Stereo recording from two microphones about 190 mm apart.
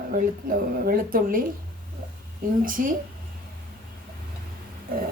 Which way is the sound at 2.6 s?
45° right (ahead or behind).